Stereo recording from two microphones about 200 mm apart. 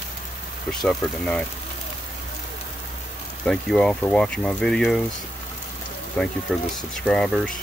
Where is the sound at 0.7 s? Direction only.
5° left (ahead or behind).